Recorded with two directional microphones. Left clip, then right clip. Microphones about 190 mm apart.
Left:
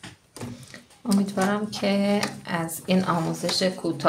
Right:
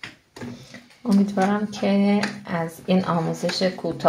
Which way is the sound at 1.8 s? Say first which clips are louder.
Right 2 dB; 35° right (ahead or behind).